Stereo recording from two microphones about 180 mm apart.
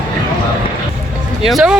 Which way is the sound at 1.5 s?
Centre (ahead or behind).